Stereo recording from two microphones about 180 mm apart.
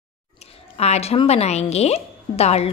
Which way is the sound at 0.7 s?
35° left (ahead or behind).